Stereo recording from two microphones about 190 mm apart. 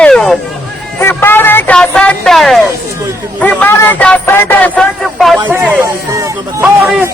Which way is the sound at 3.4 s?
10° left (ahead or behind).